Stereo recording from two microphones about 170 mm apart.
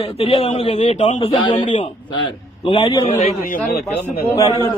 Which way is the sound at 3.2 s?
55° left (ahead or behind).